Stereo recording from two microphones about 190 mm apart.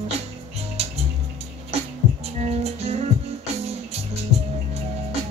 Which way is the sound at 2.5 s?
35° right (ahead or behind).